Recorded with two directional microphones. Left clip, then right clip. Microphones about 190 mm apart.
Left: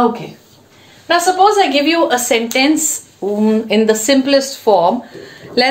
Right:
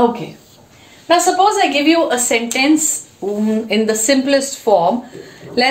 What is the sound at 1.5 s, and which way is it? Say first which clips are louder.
Speech: left 1 dB; 25° left (ahead or behind).